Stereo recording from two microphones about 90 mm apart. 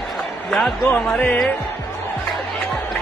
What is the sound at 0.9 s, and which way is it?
Speech, 5° left (ahead or behind).